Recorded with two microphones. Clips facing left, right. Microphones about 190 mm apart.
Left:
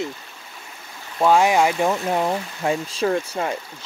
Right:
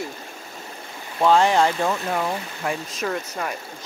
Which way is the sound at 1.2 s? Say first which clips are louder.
Left 1 dB; 10° left (ahead or behind).